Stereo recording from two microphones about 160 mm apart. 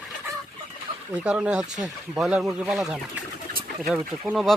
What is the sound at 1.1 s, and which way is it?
Speech, 10° right (ahead or behind).